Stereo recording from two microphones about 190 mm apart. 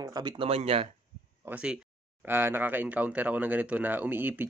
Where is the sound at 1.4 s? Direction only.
5° right (ahead or behind).